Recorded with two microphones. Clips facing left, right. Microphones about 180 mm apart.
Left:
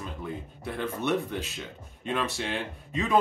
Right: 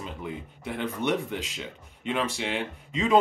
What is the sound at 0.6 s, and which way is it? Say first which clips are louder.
Speech: right 2 dB; 15° right (ahead or behind).